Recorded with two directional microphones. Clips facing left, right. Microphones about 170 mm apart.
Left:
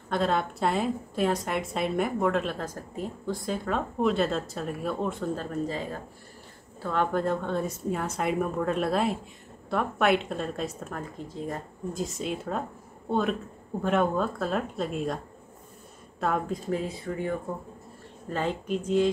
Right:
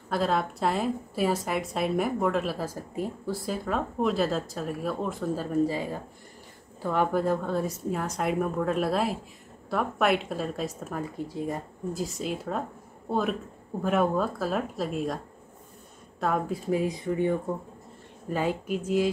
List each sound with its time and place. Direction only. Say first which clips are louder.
0.1 s a woman's voice: even; centre (ahead or behind)
16.2 s a woman's voice: even; centre (ahead or behind)
16.6 s speech: right 3 dB; 15° right (ahead or behind)
18.3 s speech: right 1 dB; 10° right (ahead or behind)